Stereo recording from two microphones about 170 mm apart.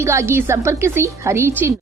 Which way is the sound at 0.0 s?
15° right (ahead or behind).